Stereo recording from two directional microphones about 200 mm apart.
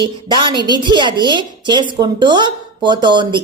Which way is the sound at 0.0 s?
25° right (ahead or behind).